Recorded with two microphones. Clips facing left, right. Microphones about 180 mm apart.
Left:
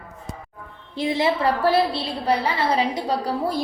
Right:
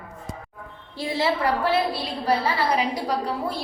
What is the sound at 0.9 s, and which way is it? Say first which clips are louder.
A woman's voice: left 3 dB; 20° left (ahead or behind).